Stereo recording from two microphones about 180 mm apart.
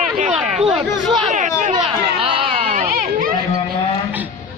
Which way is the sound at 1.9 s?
30° right (ahead or behind).